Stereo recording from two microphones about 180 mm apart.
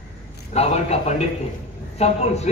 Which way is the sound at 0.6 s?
35° left (ahead or behind).